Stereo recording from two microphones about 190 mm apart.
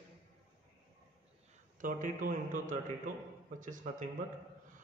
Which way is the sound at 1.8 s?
45° right (ahead or behind).